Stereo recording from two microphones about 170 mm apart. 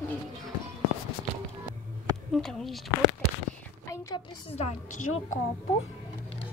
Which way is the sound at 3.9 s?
20° left (ahead or behind).